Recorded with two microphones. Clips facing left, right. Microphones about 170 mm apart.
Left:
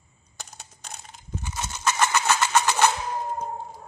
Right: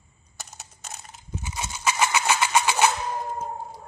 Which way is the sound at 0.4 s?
5° right (ahead or behind).